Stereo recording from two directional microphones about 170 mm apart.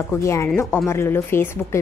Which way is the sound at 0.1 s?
15° left (ahead or behind).